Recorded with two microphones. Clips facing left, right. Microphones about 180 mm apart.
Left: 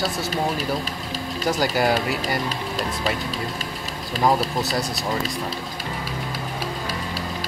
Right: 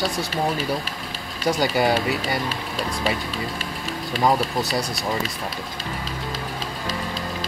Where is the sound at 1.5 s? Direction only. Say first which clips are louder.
Right 1 dB; centre (ahead or behind).